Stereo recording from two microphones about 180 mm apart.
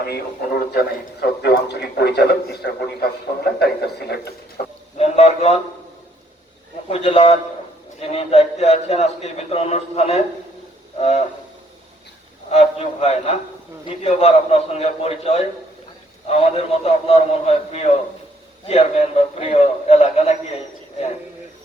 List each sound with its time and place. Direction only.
0.0 s a man's voice: 65° left (ahead or behind)
4.9 s a man's voice: 35° left (ahead or behind)
6.8 s a man's voice: 35° left (ahead or behind)
12.5 s a man's voice: 35° left (ahead or behind)